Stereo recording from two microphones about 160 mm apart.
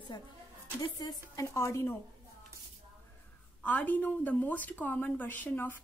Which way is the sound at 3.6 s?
10° left (ahead or behind).